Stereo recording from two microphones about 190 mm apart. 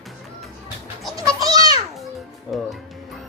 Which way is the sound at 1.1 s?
15° right (ahead or behind).